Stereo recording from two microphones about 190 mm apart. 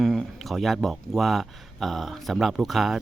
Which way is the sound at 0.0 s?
Centre (ahead or behind).